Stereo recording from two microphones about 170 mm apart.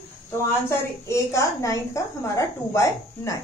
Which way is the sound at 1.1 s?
20° left (ahead or behind).